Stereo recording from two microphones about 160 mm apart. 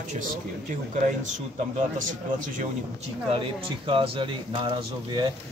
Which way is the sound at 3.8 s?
35° right (ahead or behind).